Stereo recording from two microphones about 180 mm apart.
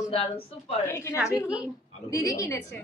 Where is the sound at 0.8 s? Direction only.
15° left (ahead or behind).